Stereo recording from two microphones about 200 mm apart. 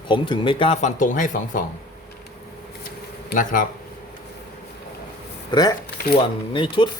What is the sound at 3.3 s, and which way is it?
Speech, 40° left (ahead or behind).